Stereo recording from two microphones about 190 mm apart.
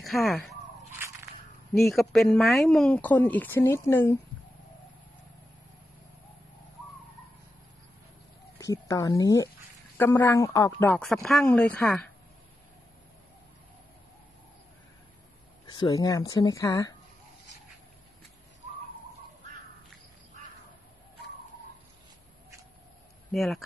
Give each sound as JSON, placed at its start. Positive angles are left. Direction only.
{"t": 0.0, "sound": "speech", "side_deg": 0}
{"t": 1.7, "sound": "speech", "side_deg": 0}
{"t": 8.5, "sound": "a woman's voice", "side_deg": 15}
{"t": 15.6, "sound": "speech", "side_deg": 25}
{"t": 23.3, "sound": "a woman's voice", "side_deg": 0}